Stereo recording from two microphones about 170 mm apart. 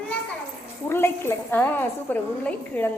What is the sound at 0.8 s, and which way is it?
A woman's voice, 15° left (ahead or behind).